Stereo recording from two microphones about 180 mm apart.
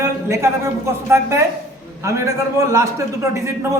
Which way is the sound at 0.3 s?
15° right (ahead or behind).